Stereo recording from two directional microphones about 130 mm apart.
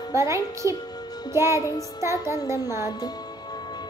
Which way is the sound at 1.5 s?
25° left (ahead or behind).